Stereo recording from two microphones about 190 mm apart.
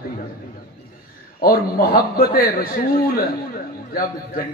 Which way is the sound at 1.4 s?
50° left (ahead or behind).